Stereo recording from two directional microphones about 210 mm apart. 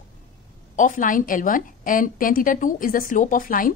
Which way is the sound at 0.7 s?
40° left (ahead or behind).